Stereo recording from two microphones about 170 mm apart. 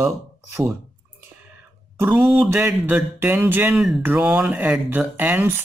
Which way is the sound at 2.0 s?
10° right (ahead or behind).